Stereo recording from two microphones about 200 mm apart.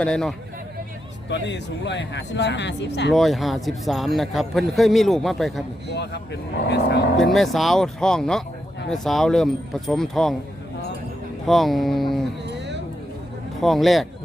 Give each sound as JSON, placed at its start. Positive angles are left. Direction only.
{"t": 0.0, "sound": "a man's voice", "side_deg": 5}
{"t": 1.3, "sound": "speech", "side_deg": 60}
{"t": 3.1, "sound": "a man's voice", "side_deg": 0}
{"t": 6.7, "sound": "speech", "side_deg": 55}
{"t": 7.2, "sound": "a man's voice", "side_deg": 0}
{"t": 11.4, "sound": "a man's voice", "side_deg": 0}
{"t": 12.5, "sound": "a sound", "side_deg": -60}
{"t": 13.6, "sound": "a man's voice", "side_deg": 0}